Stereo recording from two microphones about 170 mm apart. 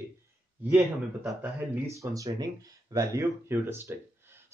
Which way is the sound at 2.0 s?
20° right (ahead or behind).